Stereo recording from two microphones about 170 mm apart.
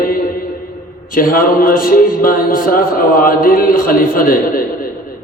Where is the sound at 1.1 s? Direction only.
55° left (ahead or behind).